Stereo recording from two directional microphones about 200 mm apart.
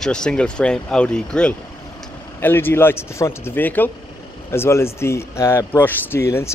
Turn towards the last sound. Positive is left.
turn(degrees=15)  # may be behind; listen again after turning